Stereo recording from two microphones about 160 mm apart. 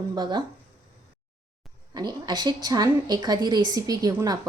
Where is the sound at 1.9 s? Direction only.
25° right (ahead or behind).